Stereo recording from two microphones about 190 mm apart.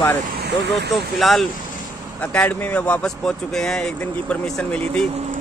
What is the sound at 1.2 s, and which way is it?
Speech, centre (ahead or behind).